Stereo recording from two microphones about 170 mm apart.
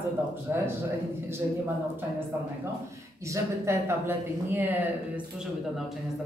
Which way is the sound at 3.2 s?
15° right (ahead or behind).